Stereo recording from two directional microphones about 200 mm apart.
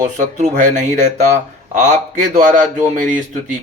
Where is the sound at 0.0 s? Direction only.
40° right (ahead or behind).